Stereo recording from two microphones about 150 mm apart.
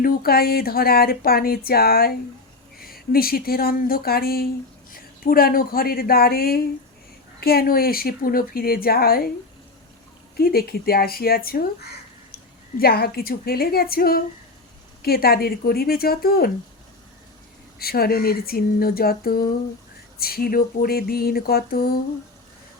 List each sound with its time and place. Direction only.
0.0 s speech: 80° left
4.9 s a woman's voice: 75° left (ahead or behind)
10.3 s speech: 90° left
17.7 s speech: 90° left